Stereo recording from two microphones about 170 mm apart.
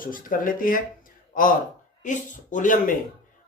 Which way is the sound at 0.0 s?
55° left (ahead or behind).